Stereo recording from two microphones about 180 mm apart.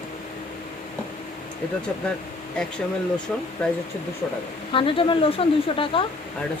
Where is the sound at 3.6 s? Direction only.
5° left (ahead or behind).